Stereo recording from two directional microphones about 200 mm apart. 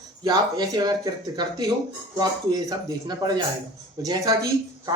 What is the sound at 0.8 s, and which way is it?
Speech, 20° right (ahead or behind).